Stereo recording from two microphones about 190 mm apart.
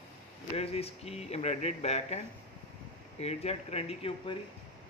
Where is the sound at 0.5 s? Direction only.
30° left (ahead or behind).